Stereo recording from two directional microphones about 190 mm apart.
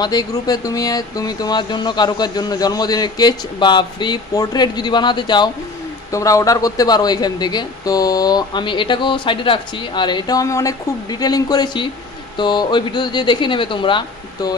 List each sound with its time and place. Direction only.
0.0 s speech: 20° left (ahead or behind)